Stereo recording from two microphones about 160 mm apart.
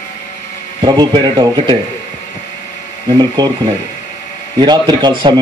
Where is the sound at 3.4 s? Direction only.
30° right (ahead or behind).